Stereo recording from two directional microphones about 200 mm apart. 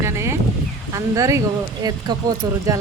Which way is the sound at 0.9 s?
15° right (ahead or behind).